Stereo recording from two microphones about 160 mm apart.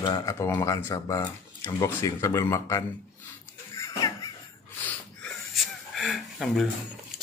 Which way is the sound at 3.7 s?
20° left (ahead or behind).